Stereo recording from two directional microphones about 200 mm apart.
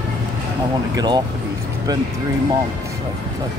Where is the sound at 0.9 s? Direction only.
20° right (ahead or behind).